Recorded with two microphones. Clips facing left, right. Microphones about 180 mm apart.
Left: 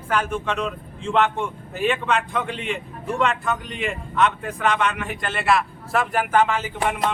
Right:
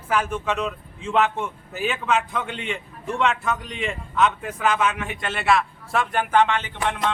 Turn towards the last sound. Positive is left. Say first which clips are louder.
# left 2 dB
turn(degrees=5)  # may be behind; listen again after turning